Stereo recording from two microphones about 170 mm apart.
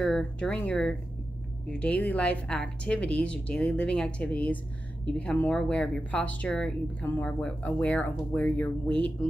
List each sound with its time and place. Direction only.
0.0 s speech: 5° left (ahead or behind)